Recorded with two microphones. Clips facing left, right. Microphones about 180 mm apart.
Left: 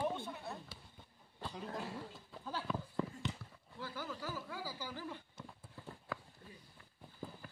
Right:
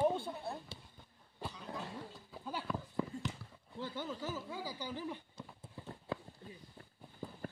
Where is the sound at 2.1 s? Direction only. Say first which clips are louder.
Right 1 dB; 5° right (ahead or behind).